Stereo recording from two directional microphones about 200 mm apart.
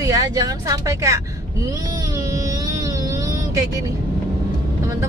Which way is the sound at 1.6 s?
15° right (ahead or behind).